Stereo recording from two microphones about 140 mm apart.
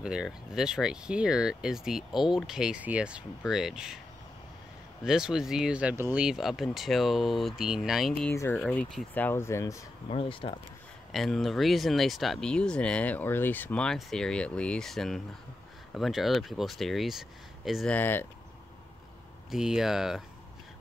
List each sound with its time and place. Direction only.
0.0 s speech: 5° right (ahead or behind)
5.0 s speech: 5° right (ahead or behind); by 9.8 s 20° left (ahead or behind)
10.0 s speech: 40° left (ahead or behind)
11.1 s speech: centre (ahead or behind)
17.9 s speech: 15° left (ahead or behind)
19.5 s speech: 5° right (ahead or behind)